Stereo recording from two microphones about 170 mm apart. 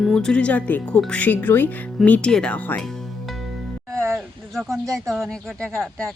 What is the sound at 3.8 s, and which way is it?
Music, 15° right (ahead or behind).